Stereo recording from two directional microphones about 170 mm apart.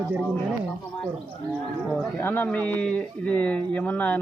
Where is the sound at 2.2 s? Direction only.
10° left (ahead or behind).